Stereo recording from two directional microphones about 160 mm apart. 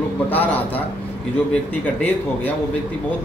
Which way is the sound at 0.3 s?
10° left (ahead or behind).